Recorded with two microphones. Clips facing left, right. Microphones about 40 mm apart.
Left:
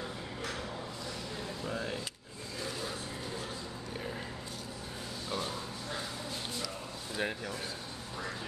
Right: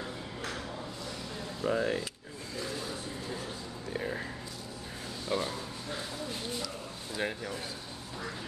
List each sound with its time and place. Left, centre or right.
1.6 s speech: right
5.3 s speech: right
7.2 s speech: centre